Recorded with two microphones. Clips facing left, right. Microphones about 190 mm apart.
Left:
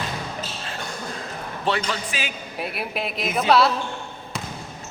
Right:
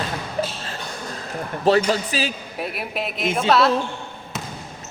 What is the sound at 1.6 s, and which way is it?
Speech, 40° right (ahead or behind).